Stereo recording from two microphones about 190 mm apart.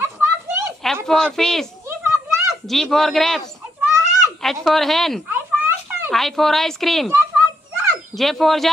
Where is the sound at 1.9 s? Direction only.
15° right (ahead or behind).